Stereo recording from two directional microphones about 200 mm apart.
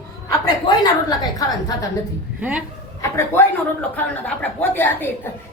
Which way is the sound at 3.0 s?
15° left (ahead or behind).